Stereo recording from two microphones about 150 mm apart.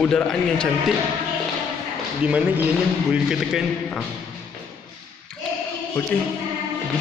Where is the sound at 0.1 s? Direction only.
5° left (ahead or behind).